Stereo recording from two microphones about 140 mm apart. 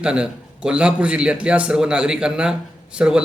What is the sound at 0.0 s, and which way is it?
A man's voice, 5° right (ahead or behind).